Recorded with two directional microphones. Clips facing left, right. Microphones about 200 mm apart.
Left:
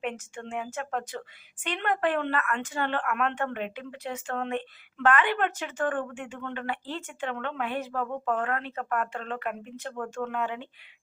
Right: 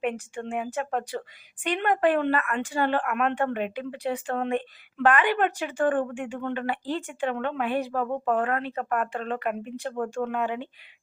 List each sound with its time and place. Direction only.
0.0 s a woman's voice: 15° right (ahead or behind)
8.0 s speech: 30° right (ahead or behind)
8.3 s a woman's voice: 15° right (ahead or behind)
9.9 s speech: 25° right (ahead or behind)
10.2 s a woman's voice: 15° right (ahead or behind)